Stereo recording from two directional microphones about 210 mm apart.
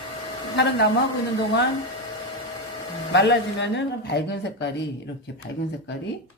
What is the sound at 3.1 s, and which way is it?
Speech, 55° left (ahead or behind).